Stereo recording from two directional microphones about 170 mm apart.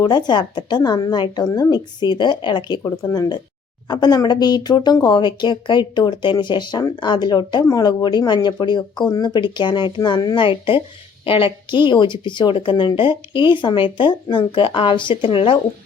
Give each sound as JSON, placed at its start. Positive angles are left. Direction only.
{"t": 0.0, "sound": "speech", "side_deg": 25}